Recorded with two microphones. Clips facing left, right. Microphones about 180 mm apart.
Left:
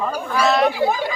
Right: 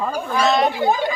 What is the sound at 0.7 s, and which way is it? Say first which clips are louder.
Speech: right 1 dB; 25° right (ahead or behind).